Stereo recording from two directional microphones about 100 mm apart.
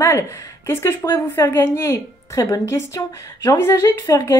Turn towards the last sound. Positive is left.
turn(degrees=25)  # may be behind; listen again after turning